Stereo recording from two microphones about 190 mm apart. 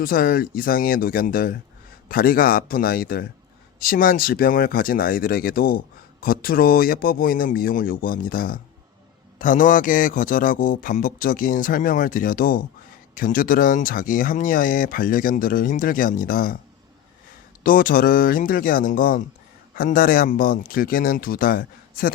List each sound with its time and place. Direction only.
0.0 s speech: 50° left (ahead or behind)
17.6 s speech: 50° left (ahead or behind)